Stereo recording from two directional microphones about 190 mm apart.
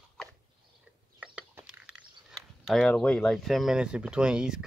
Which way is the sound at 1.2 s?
10° right (ahead or behind).